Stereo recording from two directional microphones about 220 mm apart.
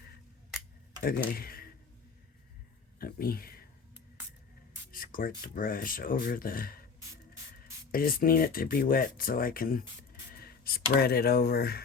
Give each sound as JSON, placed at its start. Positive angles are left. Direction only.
{"t": 1.0, "sound": "speech", "side_deg": 40}
{"t": 3.0, "sound": "speech", "side_deg": 40}
{"t": 4.9, "sound": "speech", "side_deg": 40}
{"t": 7.9, "sound": "speech", "side_deg": 40}